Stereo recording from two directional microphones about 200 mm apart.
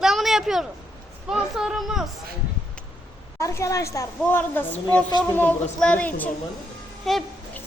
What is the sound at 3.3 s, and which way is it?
A woman's voice, 15° left (ahead or behind).